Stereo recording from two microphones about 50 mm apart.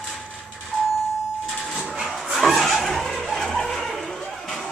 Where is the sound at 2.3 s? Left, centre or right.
Centre.